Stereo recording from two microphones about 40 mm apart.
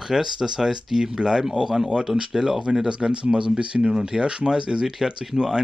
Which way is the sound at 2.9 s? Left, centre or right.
Right.